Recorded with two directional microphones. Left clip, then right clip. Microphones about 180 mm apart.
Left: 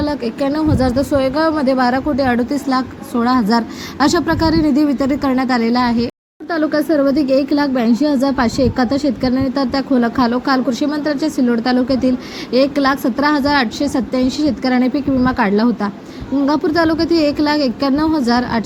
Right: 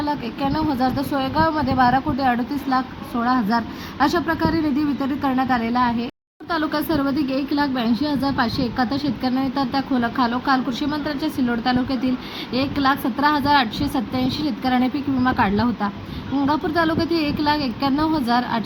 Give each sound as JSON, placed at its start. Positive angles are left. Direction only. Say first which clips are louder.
{"t": 0.0, "sound": "speech", "louder": "left 5 dB", "side_deg": 20}